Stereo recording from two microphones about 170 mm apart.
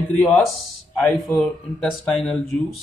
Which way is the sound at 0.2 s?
5° left (ahead or behind).